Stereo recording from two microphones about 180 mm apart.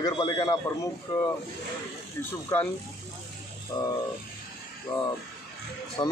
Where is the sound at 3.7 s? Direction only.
25° left (ahead or behind).